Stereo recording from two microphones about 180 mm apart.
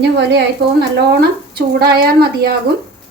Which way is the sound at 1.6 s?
60° right (ahead or behind).